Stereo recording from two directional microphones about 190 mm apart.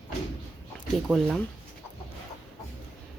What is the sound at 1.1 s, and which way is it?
Speech, centre (ahead or behind).